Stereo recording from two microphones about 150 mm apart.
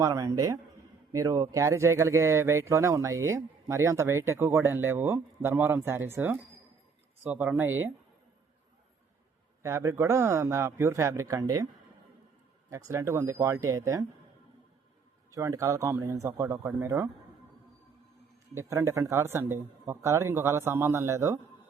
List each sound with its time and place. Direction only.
0.0 s speech: 20° right (ahead or behind)
9.6 s speech: 15° right (ahead or behind)
12.7 s speech: 20° right (ahead or behind)
15.3 s speech: 20° right (ahead or behind)
18.5 s speech: 20° right (ahead or behind)